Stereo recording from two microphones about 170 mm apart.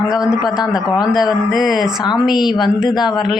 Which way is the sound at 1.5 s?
Centre (ahead or behind).